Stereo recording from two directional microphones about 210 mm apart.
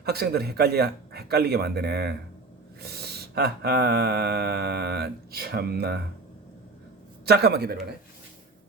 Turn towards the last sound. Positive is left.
turn(degrees=-50)  # may be behind; listen again after turning